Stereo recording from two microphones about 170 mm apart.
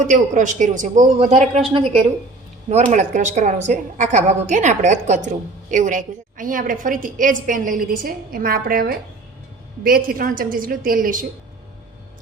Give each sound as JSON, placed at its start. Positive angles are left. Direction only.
{"t": 0.1, "sound": "a woman's voice", "side_deg": -50}
{"t": 2.6, "sound": "a woman's voice", "side_deg": -45}